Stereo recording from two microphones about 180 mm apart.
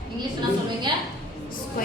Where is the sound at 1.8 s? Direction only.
50° left (ahead or behind).